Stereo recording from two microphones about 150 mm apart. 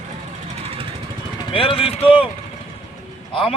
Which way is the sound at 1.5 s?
35° left (ahead or behind).